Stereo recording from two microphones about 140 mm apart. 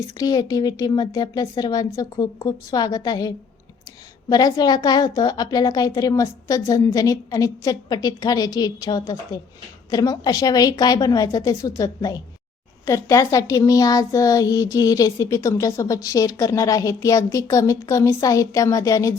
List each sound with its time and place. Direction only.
0.2 s a woman's voice: 25° left (ahead or behind)